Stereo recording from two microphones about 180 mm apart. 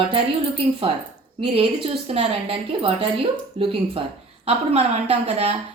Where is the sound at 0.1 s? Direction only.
30° right (ahead or behind).